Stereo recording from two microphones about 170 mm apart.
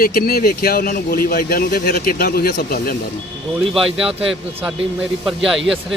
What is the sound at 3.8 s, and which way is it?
Speech, 35° right (ahead or behind).